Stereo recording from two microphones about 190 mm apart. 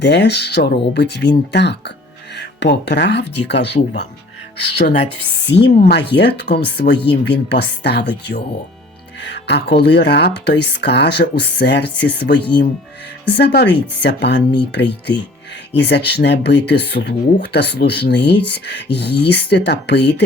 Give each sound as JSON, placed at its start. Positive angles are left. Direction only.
{"t": 0.0, "sound": "speech", "side_deg": 65}
{"t": 5.5, "sound": "speech", "side_deg": 75}
{"t": 5.9, "sound": "speech", "side_deg": 65}